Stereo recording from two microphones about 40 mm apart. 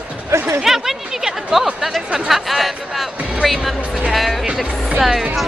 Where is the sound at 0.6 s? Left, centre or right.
Centre.